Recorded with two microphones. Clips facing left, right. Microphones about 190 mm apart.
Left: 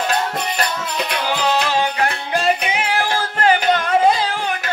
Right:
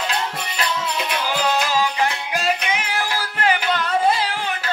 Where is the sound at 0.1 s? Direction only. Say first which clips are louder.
Left 5 dB; 50° left (ahead or behind).